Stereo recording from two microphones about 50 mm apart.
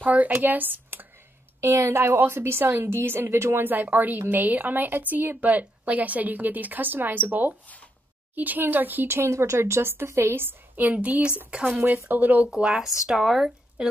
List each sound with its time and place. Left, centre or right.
0.0 s speech: right
1.6 s a woman's voice: right
3.6 s a woman's voice: right
9.0 s speech: right
9.3 s a woman's voice: right
10.8 s a woman's voice: right
12.4 s speech: centre